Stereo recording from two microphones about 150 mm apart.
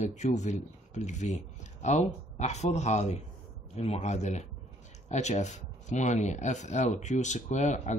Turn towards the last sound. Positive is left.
turn(degrees=50)  # may be behind; listen again after turning